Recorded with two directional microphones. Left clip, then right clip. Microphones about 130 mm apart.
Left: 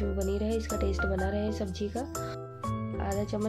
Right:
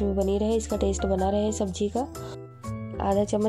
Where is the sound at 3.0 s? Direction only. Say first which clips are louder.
Right 10 dB; 55° right (ahead or behind).